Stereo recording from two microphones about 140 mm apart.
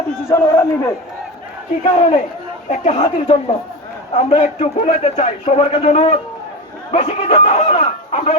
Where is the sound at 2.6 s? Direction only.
50° left (ahead or behind).